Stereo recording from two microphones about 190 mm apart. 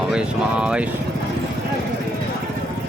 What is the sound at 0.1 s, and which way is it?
Speech, 5° right (ahead or behind).